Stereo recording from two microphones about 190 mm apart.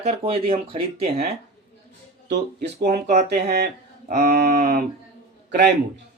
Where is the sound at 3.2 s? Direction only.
60° right (ahead or behind).